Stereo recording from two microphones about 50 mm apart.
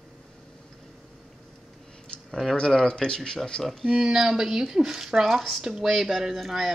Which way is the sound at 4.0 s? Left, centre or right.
Centre.